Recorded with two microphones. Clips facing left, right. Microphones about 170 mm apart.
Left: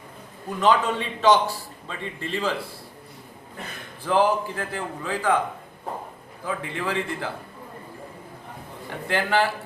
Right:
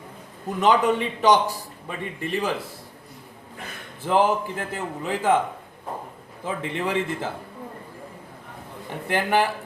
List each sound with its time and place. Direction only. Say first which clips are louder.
0.6 s a man's voice: right 2 dB; 20° right (ahead or behind)
4.0 s a man's voice: even; 20° right (ahead or behind)
6.4 s a man's voice: right 2 dB; 20° right (ahead or behind)
9.0 s a man's voice: right 1 dB; 15° right (ahead or behind)